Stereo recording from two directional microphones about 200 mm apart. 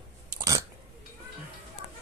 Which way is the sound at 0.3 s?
15° right (ahead or behind).